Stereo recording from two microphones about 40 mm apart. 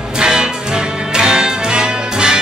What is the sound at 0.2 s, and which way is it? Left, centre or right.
Music, centre.